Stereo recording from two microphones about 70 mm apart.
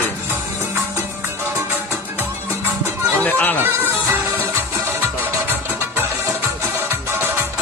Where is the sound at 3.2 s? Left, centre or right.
Left.